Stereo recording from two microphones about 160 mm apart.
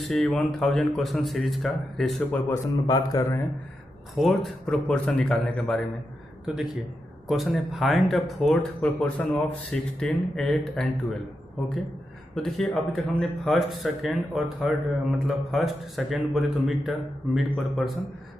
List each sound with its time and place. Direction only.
0.0 s speech: centre (ahead or behind)
2.5 s speech: 20° left (ahead or behind)
4.1 s a man's voice: centre (ahead or behind)
12.4 s speech: centre (ahead or behind)